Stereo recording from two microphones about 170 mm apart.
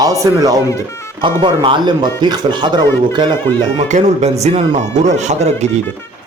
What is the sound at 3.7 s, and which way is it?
Speech, 40° right (ahead or behind).